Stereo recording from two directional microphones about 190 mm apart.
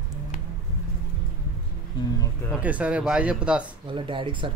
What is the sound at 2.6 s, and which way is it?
Speech, 5° right (ahead or behind).